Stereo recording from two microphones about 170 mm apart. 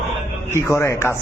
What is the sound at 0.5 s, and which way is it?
Speech, 15° left (ahead or behind).